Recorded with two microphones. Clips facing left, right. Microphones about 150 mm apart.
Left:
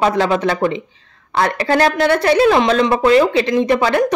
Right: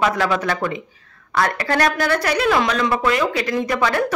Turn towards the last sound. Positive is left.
turn(degrees=25)  # may be behind; listen again after turning